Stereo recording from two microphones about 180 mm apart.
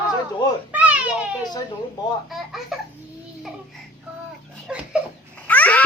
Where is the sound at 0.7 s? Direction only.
10° right (ahead or behind).